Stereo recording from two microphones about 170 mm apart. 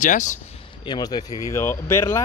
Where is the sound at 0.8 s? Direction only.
25° left (ahead or behind).